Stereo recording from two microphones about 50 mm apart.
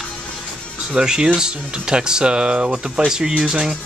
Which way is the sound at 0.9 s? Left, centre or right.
Centre.